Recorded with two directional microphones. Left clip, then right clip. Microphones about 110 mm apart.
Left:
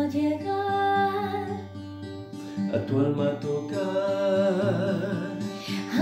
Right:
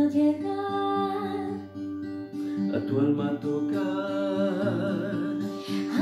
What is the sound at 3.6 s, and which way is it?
Music, 20° left (ahead or behind).